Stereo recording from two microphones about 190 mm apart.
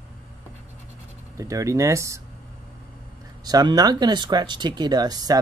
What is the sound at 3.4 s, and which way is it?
Speech, 20° right (ahead or behind).